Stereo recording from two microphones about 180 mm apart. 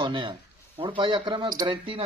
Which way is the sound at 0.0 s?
25° right (ahead or behind).